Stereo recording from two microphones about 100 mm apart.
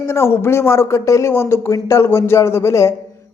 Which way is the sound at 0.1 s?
25° left (ahead or behind).